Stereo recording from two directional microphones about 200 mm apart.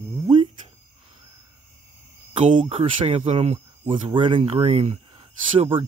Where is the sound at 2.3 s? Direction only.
30° right (ahead or behind).